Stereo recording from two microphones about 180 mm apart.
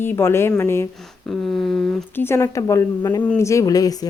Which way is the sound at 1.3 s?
Centre (ahead or behind).